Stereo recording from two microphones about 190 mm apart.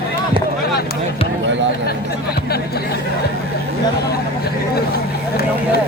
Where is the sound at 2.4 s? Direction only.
55° left (ahead or behind).